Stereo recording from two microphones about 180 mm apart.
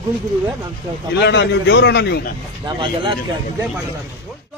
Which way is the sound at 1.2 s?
70° left (ahead or behind).